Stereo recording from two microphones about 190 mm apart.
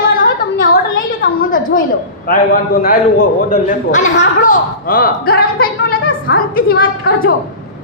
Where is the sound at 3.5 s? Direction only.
40° left (ahead or behind).